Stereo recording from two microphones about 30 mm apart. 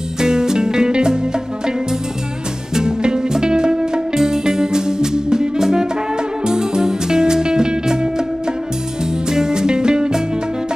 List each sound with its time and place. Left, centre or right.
0.2 s music: right
2.7 s music: right
9.3 s music: right